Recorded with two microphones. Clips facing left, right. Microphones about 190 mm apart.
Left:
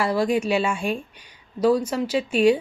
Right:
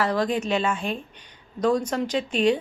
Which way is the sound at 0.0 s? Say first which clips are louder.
Left 2 dB; 10° left (ahead or behind).